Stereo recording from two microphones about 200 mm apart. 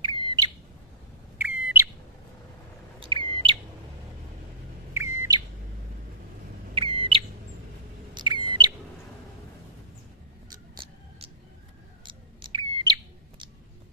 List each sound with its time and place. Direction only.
0.0 s bird: 25° right (ahead or behind)
1.4 s bird: 10° right (ahead or behind)
3.0 s chirp: 25° right (ahead or behind)
4.9 s bird: 15° right (ahead or behind)
6.7 s a sound: 25° right (ahead or behind)
8.1 s bird: 20° right (ahead or behind)
12.1 s bird: 25° right (ahead or behind)